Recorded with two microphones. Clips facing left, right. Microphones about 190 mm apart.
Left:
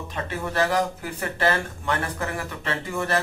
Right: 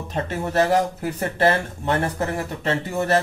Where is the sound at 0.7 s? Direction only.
40° right (ahead or behind).